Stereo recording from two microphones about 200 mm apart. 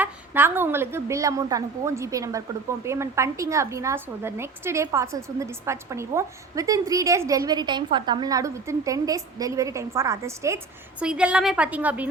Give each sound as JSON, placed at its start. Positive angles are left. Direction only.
{"t": 0.0, "sound": "a woman's voice", "side_deg": -10}